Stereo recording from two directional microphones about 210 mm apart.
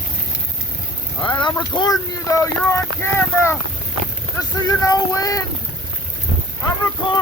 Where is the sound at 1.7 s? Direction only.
20° left (ahead or behind).